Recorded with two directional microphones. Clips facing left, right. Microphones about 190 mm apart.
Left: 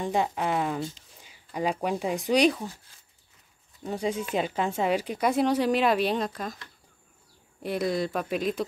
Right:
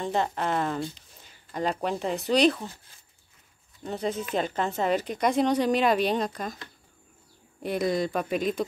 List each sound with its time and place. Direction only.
0.0 s speech: 10° left (ahead or behind)
3.8 s speech: 10° left (ahead or behind)
7.6 s speech: centre (ahead or behind)